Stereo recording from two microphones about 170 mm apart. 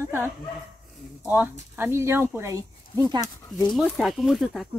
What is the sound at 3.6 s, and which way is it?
Speech, centre (ahead or behind).